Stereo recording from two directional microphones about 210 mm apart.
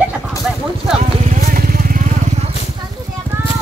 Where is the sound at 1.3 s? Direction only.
40° right (ahead or behind).